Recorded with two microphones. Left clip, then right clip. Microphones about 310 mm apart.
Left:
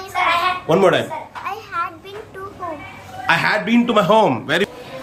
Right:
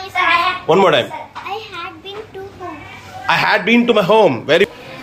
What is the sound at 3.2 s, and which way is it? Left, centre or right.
A man's voice, centre.